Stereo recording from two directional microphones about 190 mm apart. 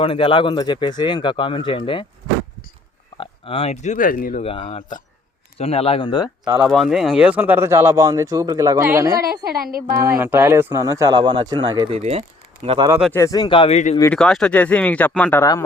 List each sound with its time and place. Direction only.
0.0 s speech: 25° left (ahead or behind)
3.2 s speech: 30° left (ahead or behind); by 4.4 s 45° left (ahead or behind)
4.4 s speech: 30° left (ahead or behind)
6.6 s speech: centre (ahead or behind); by 12.9 s 30° right (ahead or behind)
13.1 s speech: 20° left (ahead or behind); by 14.0 s 35° left (ahead or behind)
14.0 s speech: 5° left (ahead or behind)